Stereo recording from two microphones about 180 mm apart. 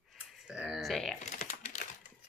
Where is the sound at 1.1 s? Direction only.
40° left (ahead or behind).